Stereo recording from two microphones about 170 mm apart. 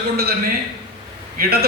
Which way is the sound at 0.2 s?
65° right (ahead or behind).